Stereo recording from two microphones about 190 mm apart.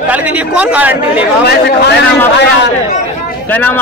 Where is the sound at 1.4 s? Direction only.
60° left (ahead or behind).